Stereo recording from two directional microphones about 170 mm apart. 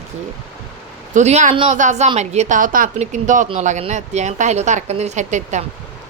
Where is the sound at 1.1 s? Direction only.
40° right (ahead or behind).